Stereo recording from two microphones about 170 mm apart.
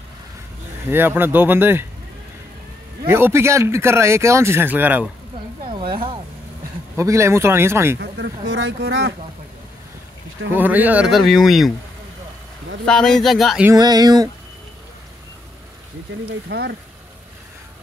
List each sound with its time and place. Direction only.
0.8 s speech: 10° right (ahead or behind)
3.1 s speech: 15° right (ahead or behind)
5.7 s a sound: 30° right (ahead or behind)
7.0 s speech: 15° right (ahead or behind)
8.0 s speech: 90° right
10.5 s speech: 10° right (ahead or behind)
12.8 s speech: 5° left (ahead or behind)
13.7 s speech: 25° right (ahead or behind)
16.4 s speech: 80° right